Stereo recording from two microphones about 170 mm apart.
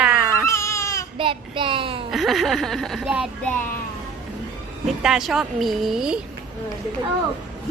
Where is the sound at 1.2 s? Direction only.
30° right (ahead or behind).